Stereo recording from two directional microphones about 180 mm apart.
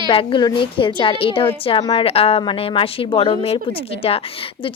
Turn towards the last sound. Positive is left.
turn(degrees=30)  # may be behind; listen again after turning